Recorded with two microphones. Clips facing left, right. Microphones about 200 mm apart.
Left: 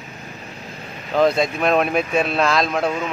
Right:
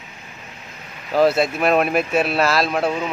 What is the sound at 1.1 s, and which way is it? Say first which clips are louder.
Speech: right 1 dB; 5° right (ahead or behind).